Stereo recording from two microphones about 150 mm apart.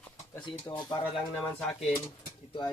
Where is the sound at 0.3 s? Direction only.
10° left (ahead or behind).